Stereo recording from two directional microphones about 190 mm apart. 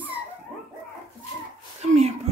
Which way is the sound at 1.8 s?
35° right (ahead or behind).